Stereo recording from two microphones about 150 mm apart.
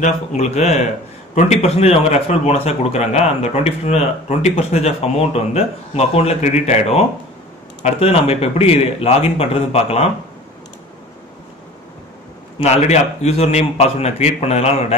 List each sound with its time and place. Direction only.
0.0 s a man's voice: 50° left (ahead or behind)
12.5 s a man's voice: 45° left (ahead or behind)